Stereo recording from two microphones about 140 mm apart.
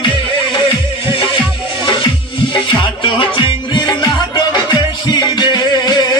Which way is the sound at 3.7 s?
30° left (ahead or behind).